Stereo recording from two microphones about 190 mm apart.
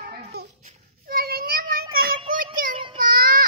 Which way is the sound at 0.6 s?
45° right (ahead or behind).